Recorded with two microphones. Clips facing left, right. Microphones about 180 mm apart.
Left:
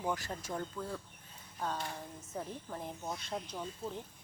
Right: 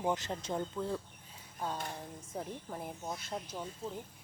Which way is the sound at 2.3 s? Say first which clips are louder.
Even; 5° right (ahead or behind).